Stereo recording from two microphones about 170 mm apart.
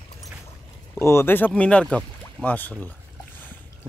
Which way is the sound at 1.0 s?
15° left (ahead or behind).